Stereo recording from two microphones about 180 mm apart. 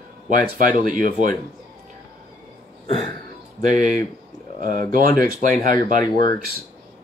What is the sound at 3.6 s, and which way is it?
Speech, 45° right (ahead or behind).